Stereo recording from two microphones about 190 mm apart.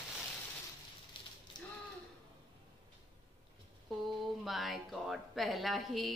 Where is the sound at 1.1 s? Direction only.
25° left (ahead or behind).